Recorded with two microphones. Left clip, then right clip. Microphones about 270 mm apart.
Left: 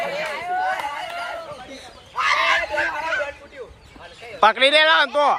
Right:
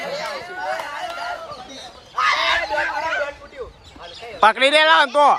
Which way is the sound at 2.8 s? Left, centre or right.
Right.